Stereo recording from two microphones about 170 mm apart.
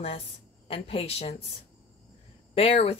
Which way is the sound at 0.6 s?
35° left (ahead or behind).